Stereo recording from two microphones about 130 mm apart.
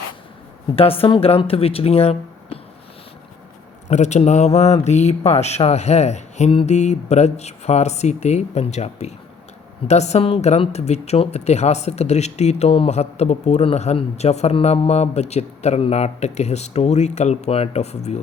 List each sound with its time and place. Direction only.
0.8 s speech: 45° left (ahead or behind)
3.8 s speech: 60° left (ahead or behind)
6.5 s speech: 45° left (ahead or behind)
6.7 s speech: 60° left (ahead or behind)